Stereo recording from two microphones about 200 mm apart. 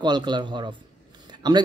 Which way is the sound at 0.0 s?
20° right (ahead or behind).